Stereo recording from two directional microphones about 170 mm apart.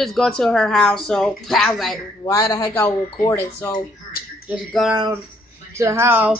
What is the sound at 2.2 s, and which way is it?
Speech, 20° left (ahead or behind).